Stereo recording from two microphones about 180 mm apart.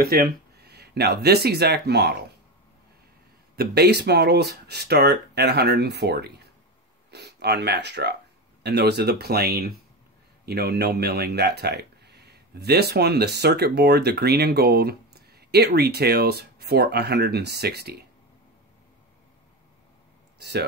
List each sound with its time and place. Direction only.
0.0 s speech: 55° right (ahead or behind)
3.5 s speech: 65° right (ahead or behind)
20.3 s speech: 65° right (ahead or behind)